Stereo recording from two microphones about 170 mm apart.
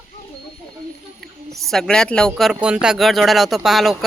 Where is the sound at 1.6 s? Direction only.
Centre (ahead or behind).